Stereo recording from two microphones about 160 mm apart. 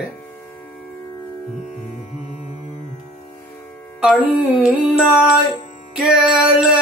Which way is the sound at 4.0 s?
Centre (ahead or behind).